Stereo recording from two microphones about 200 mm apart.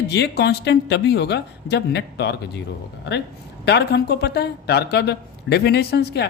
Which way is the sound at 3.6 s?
55° left (ahead or behind).